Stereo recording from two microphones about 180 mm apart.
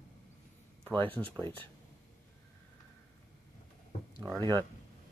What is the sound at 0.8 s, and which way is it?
Speech, 10° left (ahead or behind).